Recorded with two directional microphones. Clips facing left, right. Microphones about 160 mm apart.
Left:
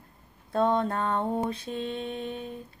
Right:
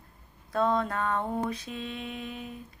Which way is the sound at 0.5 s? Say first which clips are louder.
Left 2 dB; 25° left (ahead or behind).